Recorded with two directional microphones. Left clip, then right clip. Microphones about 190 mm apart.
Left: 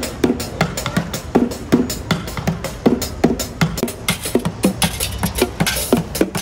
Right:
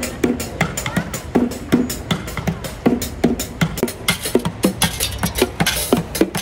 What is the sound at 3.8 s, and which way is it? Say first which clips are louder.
Music: right 1 dB; 10° left (ahead or behind).